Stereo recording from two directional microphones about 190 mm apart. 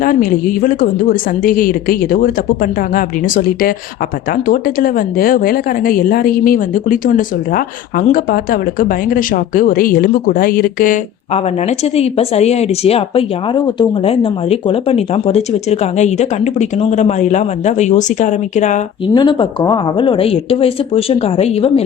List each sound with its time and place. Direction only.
0.0 s speech: 45° left (ahead or behind)
11.3 s speech: 35° left (ahead or behind)
19.0 s speech: 25° left (ahead or behind)